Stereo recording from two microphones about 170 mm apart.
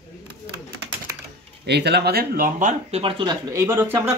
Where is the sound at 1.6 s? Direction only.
75° right (ahead or behind); by 3.0 s 50° right (ahead or behind).